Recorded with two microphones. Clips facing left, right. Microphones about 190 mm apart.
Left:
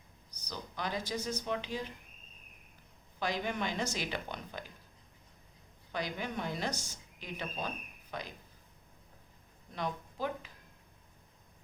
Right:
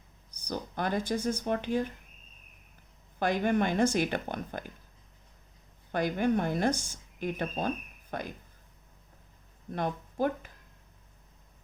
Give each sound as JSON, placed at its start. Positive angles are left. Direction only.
{"t": 0.3, "sound": "speech", "side_deg": -50}
{"t": 3.2, "sound": "speech", "side_deg": -55}
{"t": 5.9, "sound": "speech", "side_deg": -50}
{"t": 9.7, "sound": "speech", "side_deg": -50}